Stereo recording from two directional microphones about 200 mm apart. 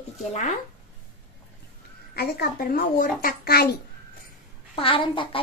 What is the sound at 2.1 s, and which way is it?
A woman's voice, 50° left (ahead or behind).